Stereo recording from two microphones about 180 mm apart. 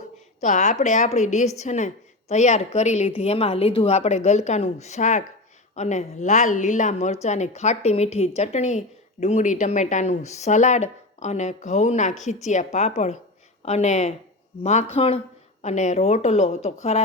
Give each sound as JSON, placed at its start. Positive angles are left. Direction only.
{"t": 0.4, "sound": "a woman's voice", "side_deg": 45}